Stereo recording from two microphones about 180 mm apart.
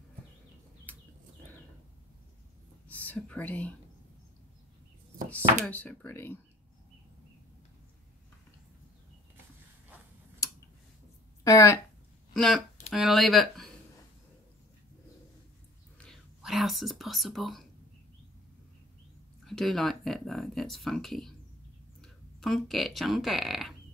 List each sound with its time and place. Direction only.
2.9 s speech: 10° left (ahead or behind)
5.3 s speech: 10° left (ahead or behind)
11.4 s speech: 15° left (ahead or behind)
12.4 s speech: centre (ahead or behind)
16.0 s whispering: centre (ahead or behind)
19.4 s speech: centre (ahead or behind)